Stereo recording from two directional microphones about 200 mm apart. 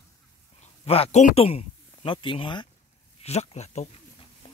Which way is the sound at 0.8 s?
30° left (ahead or behind).